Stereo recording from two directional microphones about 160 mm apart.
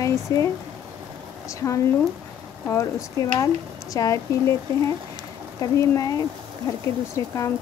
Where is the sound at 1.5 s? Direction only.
20° left (ahead or behind).